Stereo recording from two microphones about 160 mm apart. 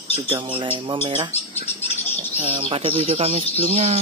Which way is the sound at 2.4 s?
35° right (ahead or behind).